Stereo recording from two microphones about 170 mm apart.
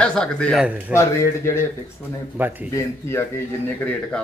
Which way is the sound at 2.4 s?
10° right (ahead or behind).